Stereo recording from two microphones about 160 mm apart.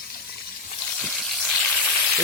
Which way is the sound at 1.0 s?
Centre (ahead or behind).